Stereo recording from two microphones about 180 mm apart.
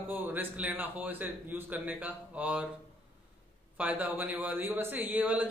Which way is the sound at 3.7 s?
10° right (ahead or behind).